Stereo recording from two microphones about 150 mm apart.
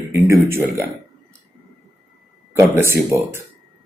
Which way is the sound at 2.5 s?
15° right (ahead or behind).